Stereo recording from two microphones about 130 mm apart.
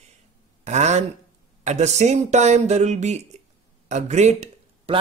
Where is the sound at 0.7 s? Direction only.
60° right (ahead or behind).